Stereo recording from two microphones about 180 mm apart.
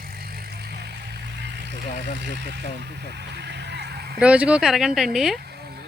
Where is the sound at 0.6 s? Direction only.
65° right (ahead or behind).